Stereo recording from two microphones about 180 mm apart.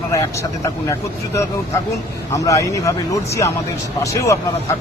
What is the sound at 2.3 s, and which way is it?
Speech, 20° left (ahead or behind).